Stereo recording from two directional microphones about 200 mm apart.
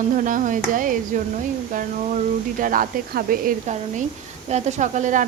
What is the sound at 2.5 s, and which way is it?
Speech, 40° right (ahead or behind).